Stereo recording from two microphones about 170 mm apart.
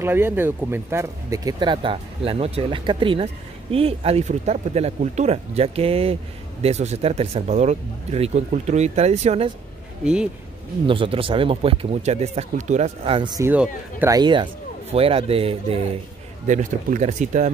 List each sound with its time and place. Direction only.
0.0 s speech: 10° right (ahead or behind); by 9.5 s 40° right (ahead or behind)
10.9 s speech: 30° right (ahead or behind)
13.4 s speech: 10° right (ahead or behind)
14.1 s speech: 25° right (ahead or behind)
16.4 s speech: 45° right (ahead or behind)